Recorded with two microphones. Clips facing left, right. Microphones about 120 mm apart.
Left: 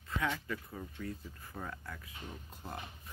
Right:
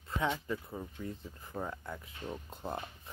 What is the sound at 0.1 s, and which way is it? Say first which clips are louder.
Speech: right 2 dB; 25° right (ahead or behind).